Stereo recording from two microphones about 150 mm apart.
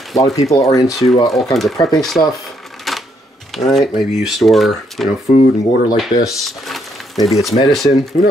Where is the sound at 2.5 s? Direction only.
Centre (ahead or behind).